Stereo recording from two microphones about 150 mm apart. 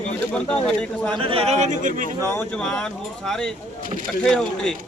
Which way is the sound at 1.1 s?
35° right (ahead or behind).